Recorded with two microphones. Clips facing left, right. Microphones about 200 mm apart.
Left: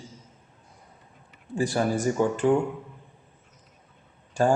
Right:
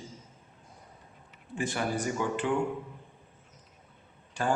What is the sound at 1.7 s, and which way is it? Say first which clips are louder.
Speech: left 7 dB; 40° left (ahead or behind).